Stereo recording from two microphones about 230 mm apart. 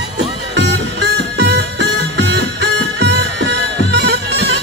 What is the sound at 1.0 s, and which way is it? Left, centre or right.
Music, right.